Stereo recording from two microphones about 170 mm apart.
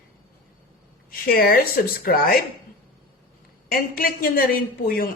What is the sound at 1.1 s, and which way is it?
Speech, 60° left (ahead or behind).